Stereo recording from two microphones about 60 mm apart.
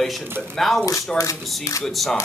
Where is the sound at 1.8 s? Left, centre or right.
Centre.